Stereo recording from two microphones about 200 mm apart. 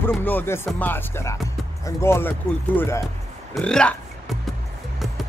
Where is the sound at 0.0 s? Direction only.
10° left (ahead or behind).